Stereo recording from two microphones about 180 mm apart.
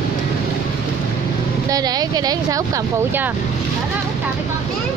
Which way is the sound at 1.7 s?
20° right (ahead or behind).